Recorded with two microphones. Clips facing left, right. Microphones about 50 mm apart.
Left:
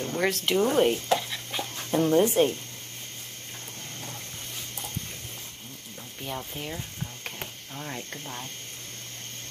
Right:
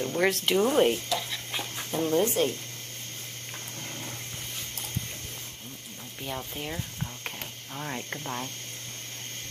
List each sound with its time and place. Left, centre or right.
0.0 s speech: centre
1.5 s dog: centre
1.9 s speech: centre
6.2 s speech: centre
8.1 s speech: right